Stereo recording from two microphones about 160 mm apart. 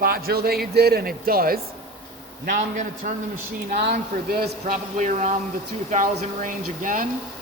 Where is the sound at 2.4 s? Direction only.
55° right (ahead or behind).